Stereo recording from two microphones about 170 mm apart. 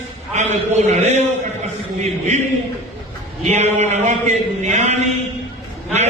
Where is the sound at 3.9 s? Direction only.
45° right (ahead or behind).